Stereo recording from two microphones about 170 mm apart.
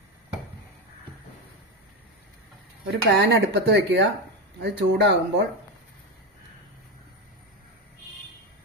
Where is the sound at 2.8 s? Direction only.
85° right.